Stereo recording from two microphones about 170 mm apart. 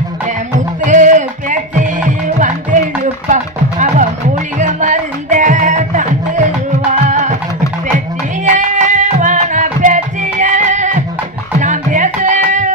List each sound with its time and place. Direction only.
0.8 s music: 45° right (ahead or behind)
8.5 s music: 45° right (ahead or behind)